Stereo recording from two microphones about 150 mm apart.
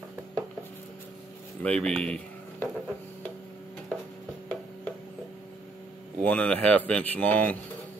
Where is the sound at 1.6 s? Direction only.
5° left (ahead or behind).